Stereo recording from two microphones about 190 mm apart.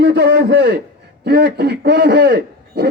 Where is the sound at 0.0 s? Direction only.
60° right (ahead or behind).